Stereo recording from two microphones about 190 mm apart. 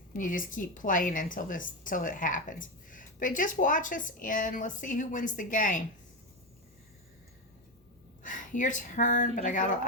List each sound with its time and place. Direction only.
0.1 s a woman's voice: 45° left (ahead or behind)
8.2 s a woman's voice: 40° left (ahead or behind)